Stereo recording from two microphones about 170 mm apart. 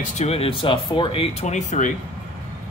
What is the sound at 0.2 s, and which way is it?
Speech, 35° left (ahead or behind).